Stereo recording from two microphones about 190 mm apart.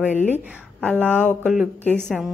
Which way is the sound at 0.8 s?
5° left (ahead or behind).